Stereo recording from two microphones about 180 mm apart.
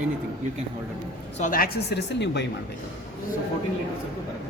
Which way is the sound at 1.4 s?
55° left (ahead or behind).